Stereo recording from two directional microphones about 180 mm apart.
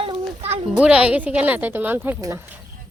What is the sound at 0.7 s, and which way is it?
A woman's voice, 5° right (ahead or behind).